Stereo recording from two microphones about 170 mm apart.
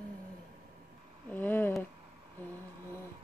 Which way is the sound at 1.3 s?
10° left (ahead or behind).